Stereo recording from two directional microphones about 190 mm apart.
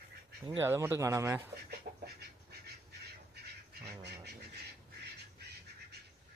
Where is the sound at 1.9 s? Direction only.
45° right (ahead or behind).